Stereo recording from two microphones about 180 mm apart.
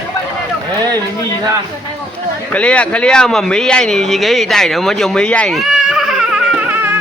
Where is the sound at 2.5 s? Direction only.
5° left (ahead or behind).